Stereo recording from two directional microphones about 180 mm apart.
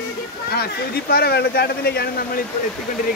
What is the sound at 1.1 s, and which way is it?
Speech, 60° left (ahead or behind).